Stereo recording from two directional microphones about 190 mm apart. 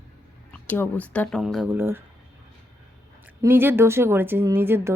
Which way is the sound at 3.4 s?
10° right (ahead or behind).